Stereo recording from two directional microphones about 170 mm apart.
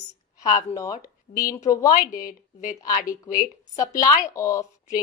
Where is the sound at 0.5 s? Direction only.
20° left (ahead or behind).